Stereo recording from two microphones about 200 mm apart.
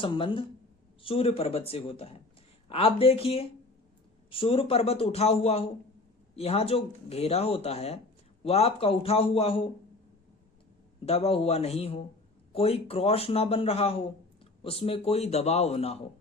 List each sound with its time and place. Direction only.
0.0 s speech: 25° left (ahead or behind)
11.0 s a man's voice: 30° left (ahead or behind)